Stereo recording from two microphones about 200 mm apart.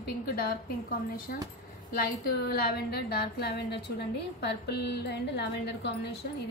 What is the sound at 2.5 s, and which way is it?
A woman's voice, 50° left (ahead or behind).